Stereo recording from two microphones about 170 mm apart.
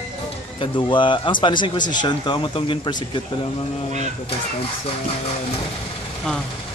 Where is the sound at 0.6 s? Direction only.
30° left (ahead or behind).